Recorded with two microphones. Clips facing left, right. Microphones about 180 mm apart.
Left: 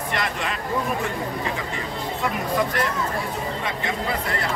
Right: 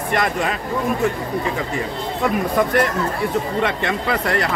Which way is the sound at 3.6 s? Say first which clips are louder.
Right 5 dB; 75° right (ahead or behind).